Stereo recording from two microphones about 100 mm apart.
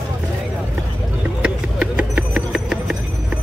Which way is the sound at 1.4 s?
10° right (ahead or behind).